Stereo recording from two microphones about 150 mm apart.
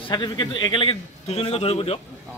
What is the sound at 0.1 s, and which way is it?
A man's voice, 30° left (ahead or behind).